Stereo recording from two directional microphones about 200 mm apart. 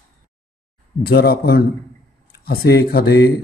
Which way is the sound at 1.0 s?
50° left (ahead or behind).